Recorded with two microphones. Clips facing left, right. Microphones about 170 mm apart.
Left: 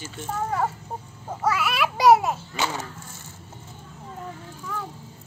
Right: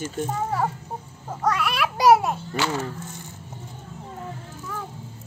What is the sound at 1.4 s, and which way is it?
Babbling, 5° left (ahead or behind).